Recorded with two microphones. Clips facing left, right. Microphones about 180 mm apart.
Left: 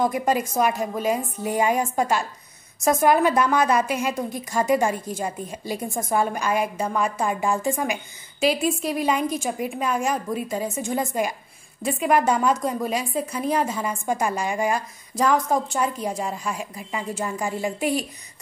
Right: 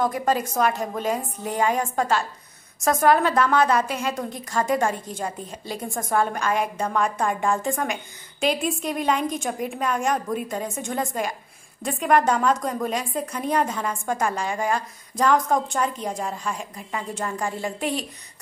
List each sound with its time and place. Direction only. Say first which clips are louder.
0.0 s a woman's voice: left 1 dB; 15° left (ahead or behind)